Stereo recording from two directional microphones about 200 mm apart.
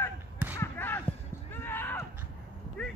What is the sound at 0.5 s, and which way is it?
Basketball bounce, 10° left (ahead or behind).